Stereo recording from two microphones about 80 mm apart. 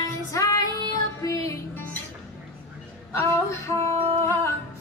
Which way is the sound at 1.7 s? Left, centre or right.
Left.